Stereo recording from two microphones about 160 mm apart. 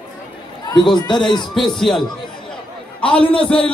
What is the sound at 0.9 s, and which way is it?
Speech, 25° left (ahead or behind).